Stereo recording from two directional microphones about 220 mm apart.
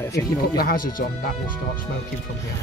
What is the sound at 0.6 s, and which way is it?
Speech, 40° left (ahead or behind).